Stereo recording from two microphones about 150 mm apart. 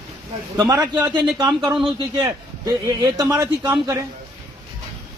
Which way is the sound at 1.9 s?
25° right (ahead or behind).